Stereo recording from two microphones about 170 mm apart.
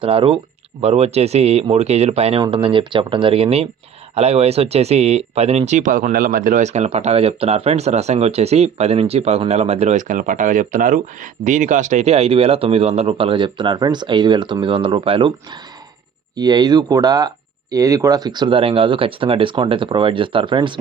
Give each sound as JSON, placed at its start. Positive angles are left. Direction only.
{"t": 0.0, "sound": "speech", "side_deg": -30}
{"t": 16.3, "sound": "speech", "side_deg": -25}